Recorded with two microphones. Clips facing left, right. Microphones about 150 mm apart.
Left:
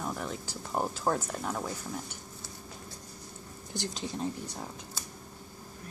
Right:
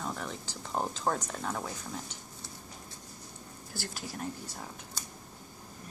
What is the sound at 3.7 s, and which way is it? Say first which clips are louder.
Speech: left 5 dB; 20° left (ahead or behind).